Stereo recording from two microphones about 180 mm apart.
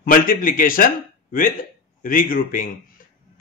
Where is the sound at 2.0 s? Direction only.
50° left (ahead or behind).